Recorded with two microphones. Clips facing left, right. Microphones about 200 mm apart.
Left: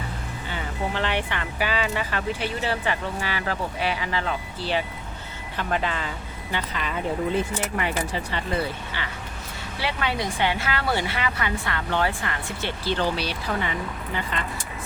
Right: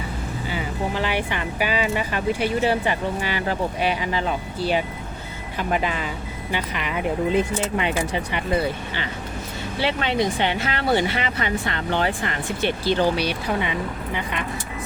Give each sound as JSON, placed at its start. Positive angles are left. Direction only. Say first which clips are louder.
{"t": 0.5, "sound": "speech", "louder": "right 2 dB", "side_deg": -10}
{"t": 9.8, "sound": "speech", "louder": "right 5 dB", "side_deg": -25}